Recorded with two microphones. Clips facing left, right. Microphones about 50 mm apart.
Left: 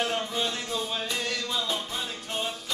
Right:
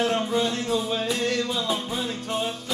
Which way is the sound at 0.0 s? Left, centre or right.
Centre.